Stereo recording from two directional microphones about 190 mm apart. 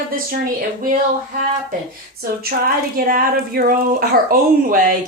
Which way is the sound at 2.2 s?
50° right (ahead or behind).